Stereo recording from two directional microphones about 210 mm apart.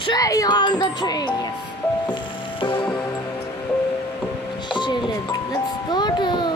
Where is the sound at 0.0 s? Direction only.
20° left (ahead or behind).